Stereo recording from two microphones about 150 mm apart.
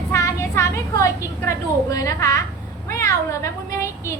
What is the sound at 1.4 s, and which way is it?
A woman's voice, 20° left (ahead or behind).